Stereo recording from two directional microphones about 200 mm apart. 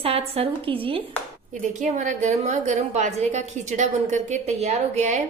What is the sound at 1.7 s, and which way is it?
A woman's voice, 40° right (ahead or behind).